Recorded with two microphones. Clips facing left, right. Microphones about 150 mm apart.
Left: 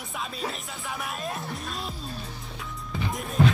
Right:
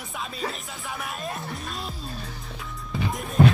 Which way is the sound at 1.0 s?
Centre (ahead or behind).